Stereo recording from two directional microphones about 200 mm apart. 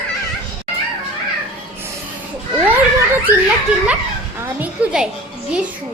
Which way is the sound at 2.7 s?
10° right (ahead or behind).